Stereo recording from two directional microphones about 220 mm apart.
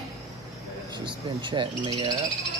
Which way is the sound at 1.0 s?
20° right (ahead or behind).